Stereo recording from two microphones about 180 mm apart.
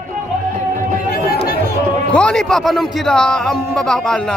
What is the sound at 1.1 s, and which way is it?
Chatter, 60° left (ahead or behind).